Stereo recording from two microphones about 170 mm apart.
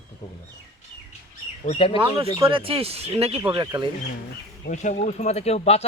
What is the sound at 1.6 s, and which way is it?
Speech, 30° left (ahead or behind).